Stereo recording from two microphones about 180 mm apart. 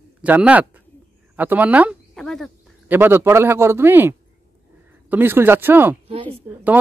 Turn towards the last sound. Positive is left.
turn(degrees=-35)  # may be behind; listen again after turning